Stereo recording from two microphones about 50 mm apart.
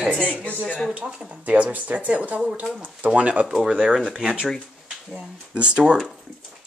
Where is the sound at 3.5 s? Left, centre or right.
Centre.